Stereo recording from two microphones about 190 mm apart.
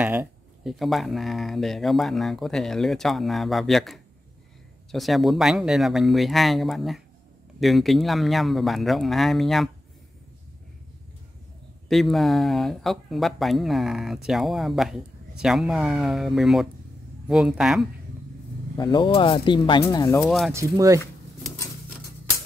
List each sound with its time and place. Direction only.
0.0 s a sound: 10° right (ahead or behind)
0.7 s speech: centre (ahead or behind)
11.9 s speech: centre (ahead or behind)
18.8 s speech: 25° left (ahead or behind)
20.2 s speech: centre (ahead or behind)
20.5 s speech: 15° right (ahead or behind)